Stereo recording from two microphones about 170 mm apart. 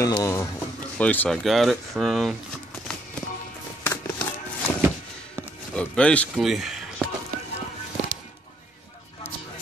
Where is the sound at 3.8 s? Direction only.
15° left (ahead or behind).